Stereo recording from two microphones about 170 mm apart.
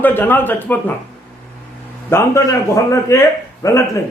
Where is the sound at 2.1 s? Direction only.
15° left (ahead or behind).